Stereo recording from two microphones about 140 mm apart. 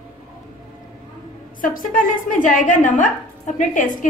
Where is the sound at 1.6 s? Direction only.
75° left (ahead or behind).